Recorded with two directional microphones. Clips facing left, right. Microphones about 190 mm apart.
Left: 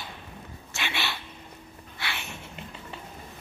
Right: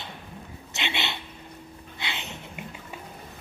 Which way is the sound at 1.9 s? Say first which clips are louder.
Even; 20° right (ahead or behind).